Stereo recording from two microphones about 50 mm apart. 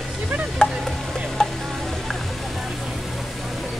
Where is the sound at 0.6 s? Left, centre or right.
Centre.